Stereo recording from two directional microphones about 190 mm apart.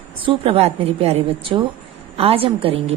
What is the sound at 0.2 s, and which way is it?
A woman's voice, 30° right (ahead or behind).